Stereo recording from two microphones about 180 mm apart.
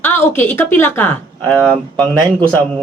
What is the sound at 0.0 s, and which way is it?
Speech, 10° left (ahead or behind).